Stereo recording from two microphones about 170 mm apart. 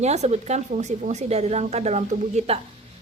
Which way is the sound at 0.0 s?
40° right (ahead or behind).